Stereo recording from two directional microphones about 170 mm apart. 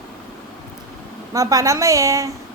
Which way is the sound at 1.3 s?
20° right (ahead or behind).